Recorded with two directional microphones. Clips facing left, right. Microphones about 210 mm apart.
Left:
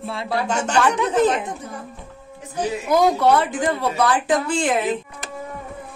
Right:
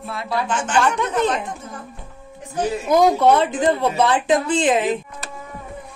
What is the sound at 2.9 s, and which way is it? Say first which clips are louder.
Speech: right 2 dB; 20° right (ahead or behind).